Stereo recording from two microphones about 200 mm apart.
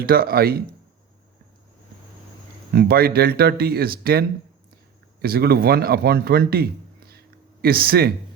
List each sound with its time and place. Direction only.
0.0 s speech: 50° right (ahead or behind)
2.7 s speech: 50° right (ahead or behind)